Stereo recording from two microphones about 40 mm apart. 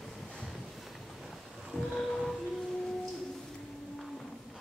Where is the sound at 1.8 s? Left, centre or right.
Centre.